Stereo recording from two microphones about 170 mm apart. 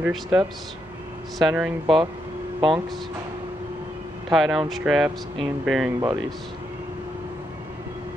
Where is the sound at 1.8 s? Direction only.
30° right (ahead or behind).